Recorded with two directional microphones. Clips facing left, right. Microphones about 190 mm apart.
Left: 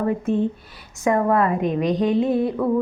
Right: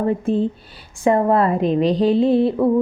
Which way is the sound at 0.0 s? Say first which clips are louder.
Right 2 dB; 30° right (ahead or behind).